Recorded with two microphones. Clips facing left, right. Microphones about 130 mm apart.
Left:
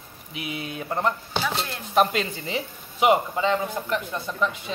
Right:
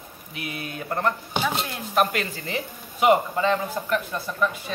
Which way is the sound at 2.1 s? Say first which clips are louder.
Left 1 dB; 20° left (ahead or behind).